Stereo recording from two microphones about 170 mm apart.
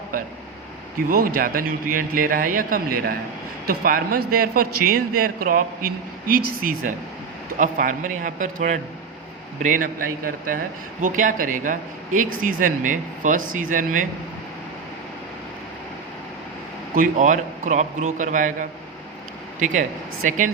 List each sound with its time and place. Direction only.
1.1 s a man's voice: 55° right (ahead or behind)
16.9 s speech: 50° right (ahead or behind)